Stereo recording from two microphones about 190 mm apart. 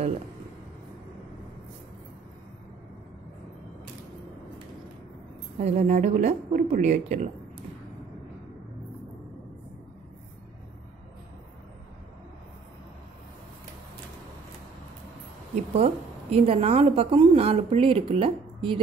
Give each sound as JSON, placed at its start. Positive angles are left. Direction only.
{"t": 5.6, "sound": "a woman's voice", "side_deg": -35}
{"t": 15.5, "sound": "a woman's voice", "side_deg": -35}